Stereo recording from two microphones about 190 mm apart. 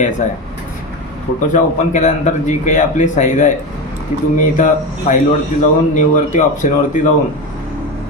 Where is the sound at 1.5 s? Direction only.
40° left (ahead or behind).